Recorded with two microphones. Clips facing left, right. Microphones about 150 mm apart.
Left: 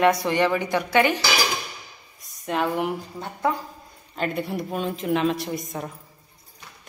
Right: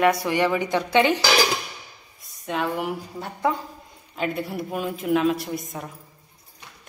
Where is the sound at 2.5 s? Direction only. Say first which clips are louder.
Left 2 dB; centre (ahead or behind).